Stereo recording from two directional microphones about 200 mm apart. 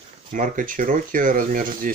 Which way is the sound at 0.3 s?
40° right (ahead or behind).